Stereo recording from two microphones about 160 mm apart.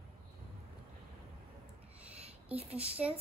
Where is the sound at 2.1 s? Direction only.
40° right (ahead or behind).